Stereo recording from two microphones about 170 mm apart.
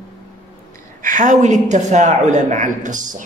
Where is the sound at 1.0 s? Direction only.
45° right (ahead or behind).